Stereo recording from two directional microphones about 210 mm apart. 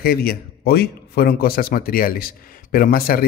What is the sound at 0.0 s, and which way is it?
A man's voice, 45° left (ahead or behind).